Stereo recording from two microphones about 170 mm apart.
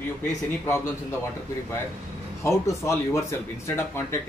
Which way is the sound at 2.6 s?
15° left (ahead or behind).